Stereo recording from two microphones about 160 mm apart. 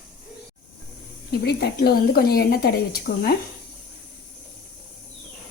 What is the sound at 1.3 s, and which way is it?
Speech, 90° left.